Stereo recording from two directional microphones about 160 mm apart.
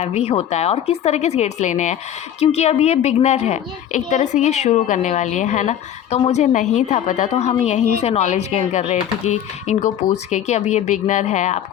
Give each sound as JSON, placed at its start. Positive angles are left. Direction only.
{"t": 0.0, "sound": "a woman's voice", "side_deg": 40}